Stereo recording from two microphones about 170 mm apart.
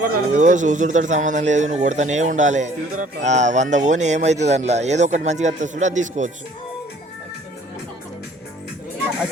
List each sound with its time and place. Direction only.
0.0 s speech: 50° right (ahead or behind)